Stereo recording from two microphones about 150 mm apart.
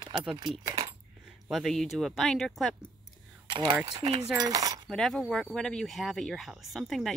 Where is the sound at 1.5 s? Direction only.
Centre (ahead or behind).